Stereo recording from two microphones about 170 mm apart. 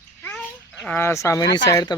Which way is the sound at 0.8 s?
10° left (ahead or behind).